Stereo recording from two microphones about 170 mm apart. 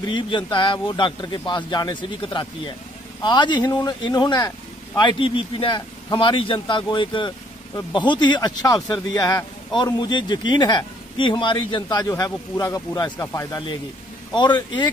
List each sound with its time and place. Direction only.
0.0 s a man's voice: 25° left (ahead or behind)